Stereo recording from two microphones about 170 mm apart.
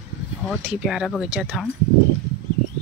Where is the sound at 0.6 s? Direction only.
5° right (ahead or behind).